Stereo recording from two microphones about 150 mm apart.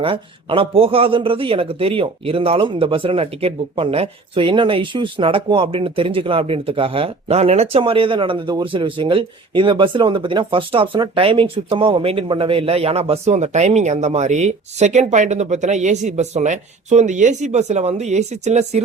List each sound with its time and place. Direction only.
0.0 s speech: 35° right (ahead or behind)